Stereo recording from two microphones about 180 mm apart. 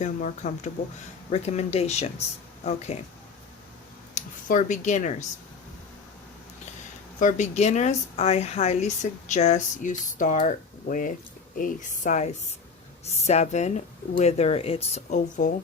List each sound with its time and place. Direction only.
0.0 s speech: 45° left (ahead or behind)
4.1 s speech: 45° left (ahead or behind)
7.2 s speech: 45° left (ahead or behind)